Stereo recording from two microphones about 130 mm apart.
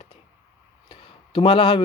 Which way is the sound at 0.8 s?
40° left (ahead or behind).